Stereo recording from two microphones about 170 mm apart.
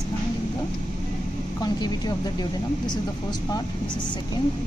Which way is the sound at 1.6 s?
25° left (ahead or behind).